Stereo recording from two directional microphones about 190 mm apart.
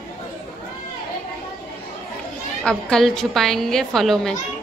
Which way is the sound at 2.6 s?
5° left (ahead or behind).